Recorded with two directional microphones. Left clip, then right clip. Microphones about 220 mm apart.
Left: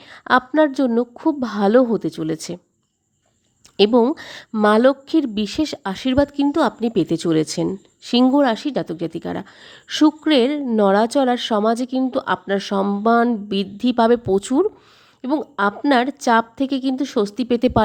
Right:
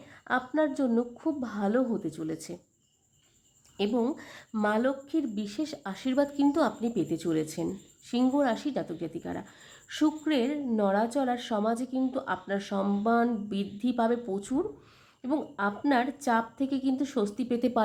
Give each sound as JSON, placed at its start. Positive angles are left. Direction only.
{"t": 0.0, "sound": "speech", "side_deg": 40}
{"t": 3.8, "sound": "speech", "side_deg": 40}